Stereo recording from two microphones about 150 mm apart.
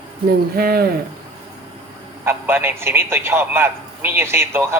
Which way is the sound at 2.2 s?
15° right (ahead or behind).